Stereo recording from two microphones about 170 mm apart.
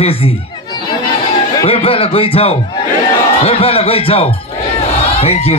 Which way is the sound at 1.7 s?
35° left (ahead or behind).